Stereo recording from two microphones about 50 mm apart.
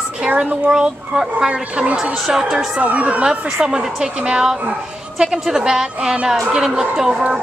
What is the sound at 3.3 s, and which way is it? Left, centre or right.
Speech, centre.